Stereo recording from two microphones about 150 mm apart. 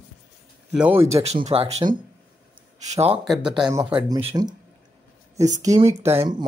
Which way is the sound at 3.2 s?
Centre (ahead or behind).